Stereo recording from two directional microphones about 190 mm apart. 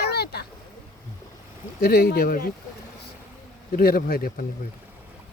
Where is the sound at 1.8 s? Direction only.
55° left (ahead or behind).